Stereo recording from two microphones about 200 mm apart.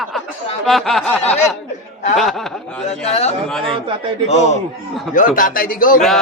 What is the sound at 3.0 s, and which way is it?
A man's voice, 30° left (ahead or behind).